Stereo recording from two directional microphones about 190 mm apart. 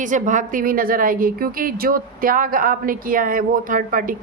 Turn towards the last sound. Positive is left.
turn(degrees=-45)  # may be behind; listen again after turning